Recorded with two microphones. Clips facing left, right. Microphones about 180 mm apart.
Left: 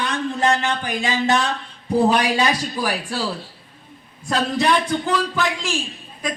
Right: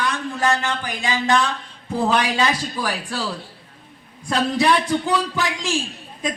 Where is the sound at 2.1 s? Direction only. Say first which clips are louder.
Right 3 dB; 15° left (ahead or behind).